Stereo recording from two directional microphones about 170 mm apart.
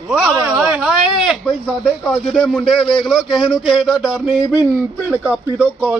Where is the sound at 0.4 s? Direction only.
10° right (ahead or behind).